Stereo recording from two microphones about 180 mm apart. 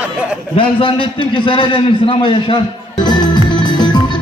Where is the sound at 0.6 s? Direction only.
30° left (ahead or behind).